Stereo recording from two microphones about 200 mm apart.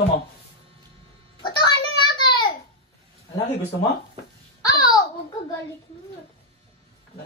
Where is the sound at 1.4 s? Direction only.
20° left (ahead or behind).